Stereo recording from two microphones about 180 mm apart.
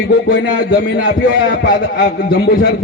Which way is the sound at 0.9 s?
70° left (ahead or behind).